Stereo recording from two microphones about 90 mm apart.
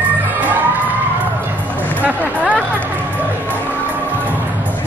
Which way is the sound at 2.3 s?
15° right (ahead or behind).